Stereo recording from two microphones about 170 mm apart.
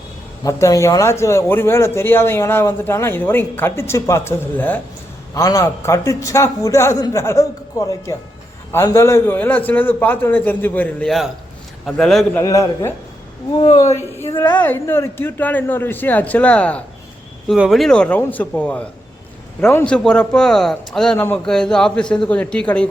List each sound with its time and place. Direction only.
0.4 s a man's voice: 20° left (ahead or behind)
12.4 s a man's voice: 20° left (ahead or behind)